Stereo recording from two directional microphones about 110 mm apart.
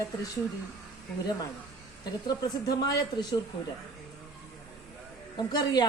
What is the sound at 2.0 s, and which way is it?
A woman's voice, 40° left (ahead or behind).